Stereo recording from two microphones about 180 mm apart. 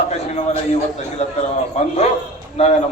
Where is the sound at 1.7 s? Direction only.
35° left (ahead or behind).